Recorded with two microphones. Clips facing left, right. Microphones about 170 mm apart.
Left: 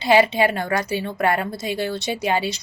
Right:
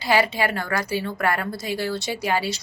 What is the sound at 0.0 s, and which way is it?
A woman's voice, 20° left (ahead or behind).